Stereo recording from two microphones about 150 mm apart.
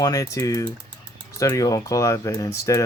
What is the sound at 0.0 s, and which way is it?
Speech, 25° left (ahead or behind).